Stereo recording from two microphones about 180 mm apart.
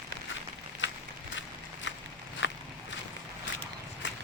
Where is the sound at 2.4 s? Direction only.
90° left.